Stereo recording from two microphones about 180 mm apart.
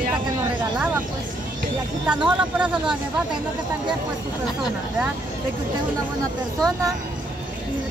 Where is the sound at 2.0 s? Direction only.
5° right (ahead or behind).